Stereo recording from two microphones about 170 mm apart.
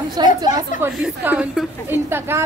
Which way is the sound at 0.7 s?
10° right (ahead or behind).